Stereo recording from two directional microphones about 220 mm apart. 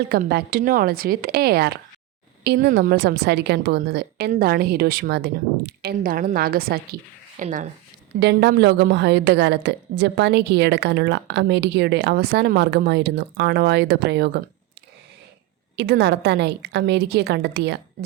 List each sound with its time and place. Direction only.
0.1 s a woman's voice: 45° right (ahead or behind)
8.2 s a woman's voice: 50° right (ahead or behind)
15.7 s a woman's voice: 50° right (ahead or behind)